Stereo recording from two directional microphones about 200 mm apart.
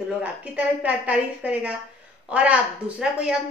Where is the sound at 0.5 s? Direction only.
5° right (ahead or behind).